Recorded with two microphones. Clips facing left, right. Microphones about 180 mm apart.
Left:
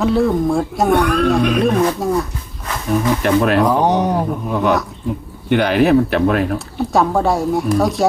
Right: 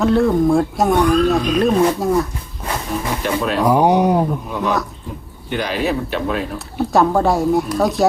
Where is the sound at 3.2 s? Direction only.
65° left (ahead or behind).